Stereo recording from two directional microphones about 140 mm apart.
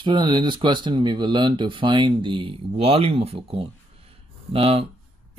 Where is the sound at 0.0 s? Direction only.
35° right (ahead or behind).